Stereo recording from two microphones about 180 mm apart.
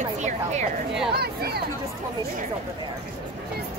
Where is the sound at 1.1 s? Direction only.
60° right (ahead or behind).